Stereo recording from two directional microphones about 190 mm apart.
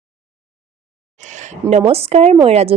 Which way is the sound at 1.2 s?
40° right (ahead or behind).